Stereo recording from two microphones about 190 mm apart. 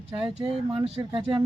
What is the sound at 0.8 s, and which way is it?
Speech, 30° right (ahead or behind).